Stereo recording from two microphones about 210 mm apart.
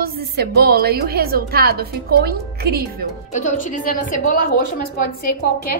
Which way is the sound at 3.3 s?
40° left (ahead or behind).